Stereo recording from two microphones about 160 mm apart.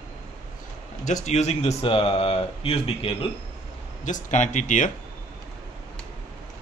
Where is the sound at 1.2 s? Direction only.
45° left (ahead or behind).